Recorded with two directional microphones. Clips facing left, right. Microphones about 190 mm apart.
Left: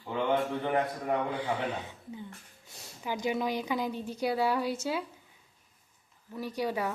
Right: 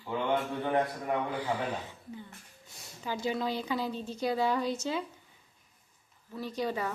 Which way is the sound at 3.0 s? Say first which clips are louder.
Left 1 dB; 15° left (ahead or behind).